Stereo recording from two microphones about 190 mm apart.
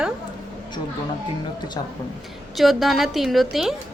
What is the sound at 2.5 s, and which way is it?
A woman's voice, centre (ahead or behind).